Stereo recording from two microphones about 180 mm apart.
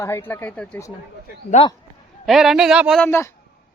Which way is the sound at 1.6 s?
35° left (ahead or behind).